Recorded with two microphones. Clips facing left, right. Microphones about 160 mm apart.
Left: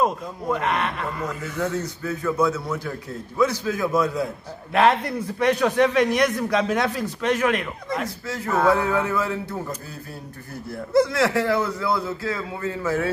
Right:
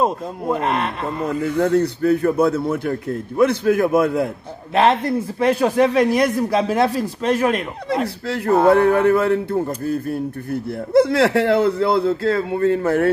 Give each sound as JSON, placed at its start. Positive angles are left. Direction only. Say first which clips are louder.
{"t": 0.0, "sound": "speech", "louder": "right 3 dB", "side_deg": -30}
{"t": 1.4, "sound": "a man's voice", "louder": "right 11 dB", "side_deg": -60}
{"t": 5.2, "sound": "speech", "louder": "even", "side_deg": -30}
{"t": 8.3, "sound": "a man's voice", "louder": "right 6 dB", "side_deg": -65}